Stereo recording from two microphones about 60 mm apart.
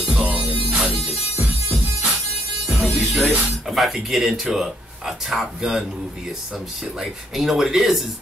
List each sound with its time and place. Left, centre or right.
0.1 s music: centre
3.3 s speech: right
3.6 s speech: centre
7.0 s speech: centre